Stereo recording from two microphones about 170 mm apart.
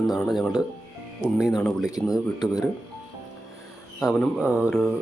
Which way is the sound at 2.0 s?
20° left (ahead or behind).